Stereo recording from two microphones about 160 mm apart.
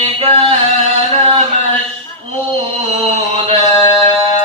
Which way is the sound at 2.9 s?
40° right (ahead or behind).